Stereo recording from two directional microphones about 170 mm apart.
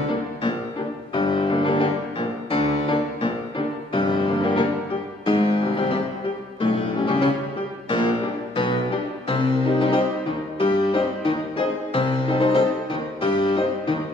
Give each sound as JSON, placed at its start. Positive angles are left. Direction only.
{"t": 1.1, "sound": "music", "side_deg": 30}